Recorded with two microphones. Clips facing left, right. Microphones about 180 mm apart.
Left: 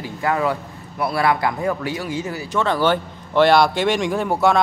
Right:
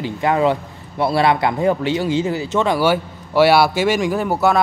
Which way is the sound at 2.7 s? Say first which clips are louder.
Right 2 dB; 10° right (ahead or behind).